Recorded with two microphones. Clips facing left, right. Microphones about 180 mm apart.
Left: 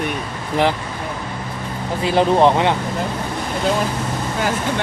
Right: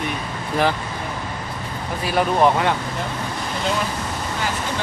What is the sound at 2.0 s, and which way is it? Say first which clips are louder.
Speech: left 4 dB; 25° left (ahead or behind).